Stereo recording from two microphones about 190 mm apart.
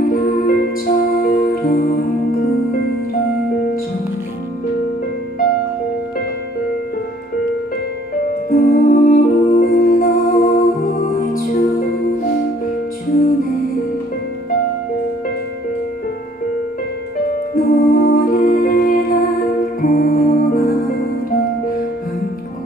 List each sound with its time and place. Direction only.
0.0 s music: 50° left (ahead or behind)
8.5 s music: 50° left (ahead or behind)
17.6 s music: 50° left (ahead or behind)